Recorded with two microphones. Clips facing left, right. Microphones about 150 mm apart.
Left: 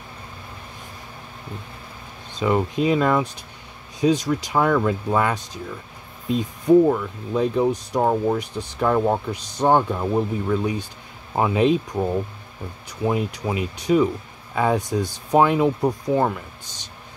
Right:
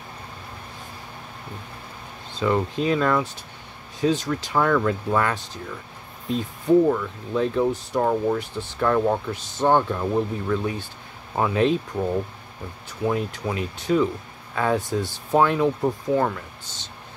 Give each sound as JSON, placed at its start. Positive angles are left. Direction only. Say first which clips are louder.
{"t": 2.3, "sound": "speech", "louder": "left 2 dB", "side_deg": 15}
{"t": 6.9, "sound": "speech", "louder": "left 1 dB", "side_deg": 15}